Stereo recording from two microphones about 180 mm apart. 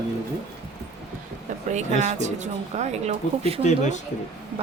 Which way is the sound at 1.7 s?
40° right (ahead or behind).